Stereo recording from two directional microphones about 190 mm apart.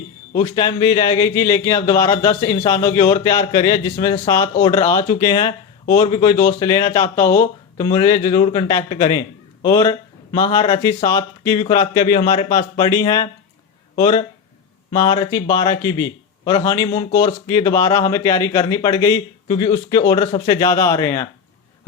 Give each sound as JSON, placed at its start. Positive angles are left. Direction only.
{"t": 0.3, "sound": "speech", "side_deg": 25}